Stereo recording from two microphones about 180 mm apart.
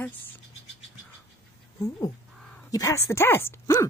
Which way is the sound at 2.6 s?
20° left (ahead or behind).